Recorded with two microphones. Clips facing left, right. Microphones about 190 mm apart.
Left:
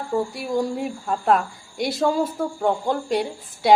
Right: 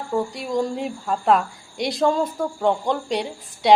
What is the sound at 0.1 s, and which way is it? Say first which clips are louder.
Speech: even; 5° left (ahead or behind).